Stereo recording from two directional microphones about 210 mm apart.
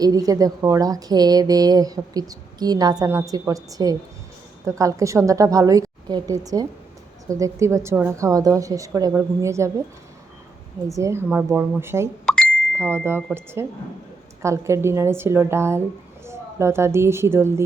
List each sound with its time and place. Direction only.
0.0 s speech: 15° right (ahead or behind)
10.8 s speech: 15° right (ahead or behind)
12.2 s a sound: 5° left (ahead or behind)
12.7 s a woman's voice: 10° right (ahead or behind)